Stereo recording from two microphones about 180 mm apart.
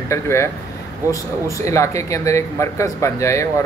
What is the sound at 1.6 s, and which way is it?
Speech, 15° left (ahead or behind).